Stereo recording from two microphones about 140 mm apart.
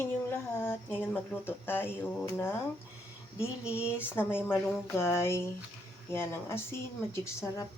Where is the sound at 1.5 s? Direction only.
15° left (ahead or behind).